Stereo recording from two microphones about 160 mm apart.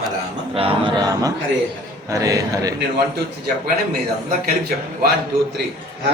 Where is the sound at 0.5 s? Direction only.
35° right (ahead or behind).